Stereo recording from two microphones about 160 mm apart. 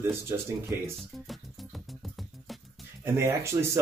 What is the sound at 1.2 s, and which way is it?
Music, centre (ahead or behind).